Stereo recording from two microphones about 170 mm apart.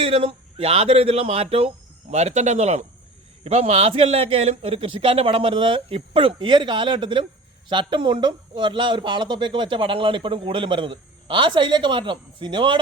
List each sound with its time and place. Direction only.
0.0 s a man's voice: 35° right (ahead or behind)